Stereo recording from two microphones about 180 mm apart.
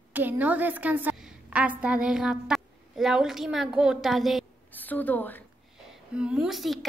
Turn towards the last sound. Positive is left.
turn(degrees=0)  # may be behind; listen again after turning